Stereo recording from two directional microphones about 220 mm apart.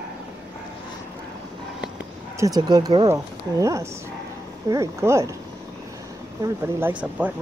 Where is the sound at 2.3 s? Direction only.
15° right (ahead or behind).